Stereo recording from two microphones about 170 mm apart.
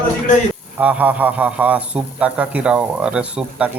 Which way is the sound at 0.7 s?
10° right (ahead or behind).